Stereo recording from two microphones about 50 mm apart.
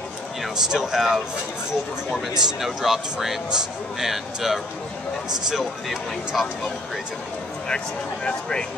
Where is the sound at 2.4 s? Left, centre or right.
Centre.